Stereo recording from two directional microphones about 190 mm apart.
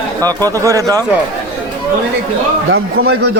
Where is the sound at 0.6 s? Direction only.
15° right (ahead or behind).